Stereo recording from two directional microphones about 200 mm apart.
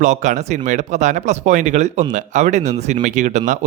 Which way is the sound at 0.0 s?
40° right (ahead or behind).